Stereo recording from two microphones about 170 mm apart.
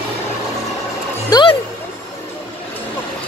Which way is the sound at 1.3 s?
20° left (ahead or behind).